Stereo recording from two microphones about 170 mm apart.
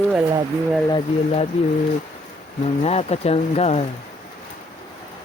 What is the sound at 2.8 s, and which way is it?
Speech, 40° left (ahead or behind).